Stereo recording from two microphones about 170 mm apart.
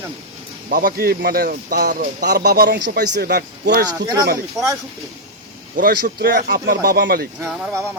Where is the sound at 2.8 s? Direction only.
55° right (ahead or behind).